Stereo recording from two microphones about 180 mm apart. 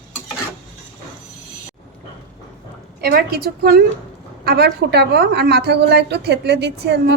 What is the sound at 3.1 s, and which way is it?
A woman's voice, 60° right (ahead or behind).